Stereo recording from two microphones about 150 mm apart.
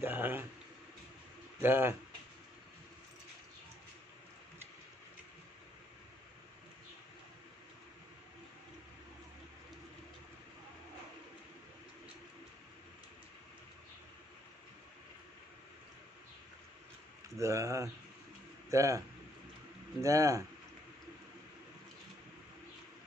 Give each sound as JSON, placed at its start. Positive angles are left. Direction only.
{"t": 0.0, "sound": "a sound", "side_deg": -15}
{"t": 1.6, "sound": "speech", "side_deg": -15}
{"t": 17.4, "sound": "speech", "side_deg": -20}